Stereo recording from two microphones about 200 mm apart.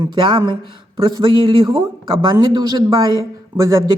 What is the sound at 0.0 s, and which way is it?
Speech, 20° right (ahead or behind).